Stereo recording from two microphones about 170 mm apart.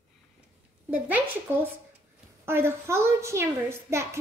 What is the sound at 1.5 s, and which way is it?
A woman's voice, 15° right (ahead or behind).